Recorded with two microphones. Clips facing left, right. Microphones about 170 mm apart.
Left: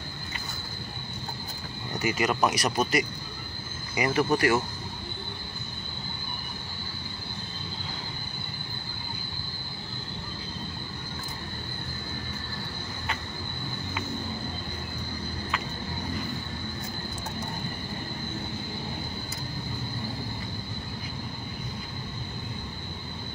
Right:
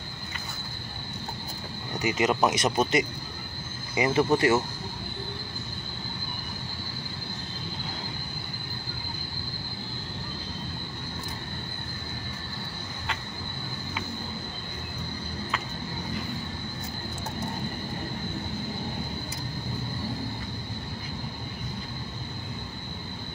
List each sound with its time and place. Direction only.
2.0 s speech: 20° right (ahead or behind)